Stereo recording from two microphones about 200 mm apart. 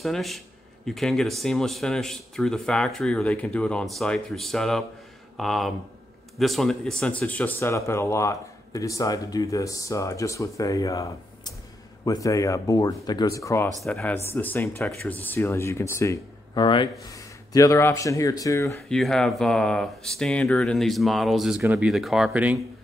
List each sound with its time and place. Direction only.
0.0 s speech: centre (ahead or behind)
13.8 s speech: centre (ahead or behind)
18.8 s speech: centre (ahead or behind)